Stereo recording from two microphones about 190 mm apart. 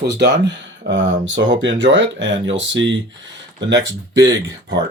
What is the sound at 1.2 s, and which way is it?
Speech, 75° right (ahead or behind).